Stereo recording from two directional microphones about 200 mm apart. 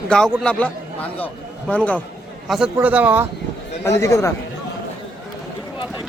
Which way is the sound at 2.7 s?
10° right (ahead or behind).